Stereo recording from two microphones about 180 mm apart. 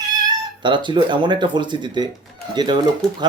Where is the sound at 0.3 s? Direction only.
25° right (ahead or behind).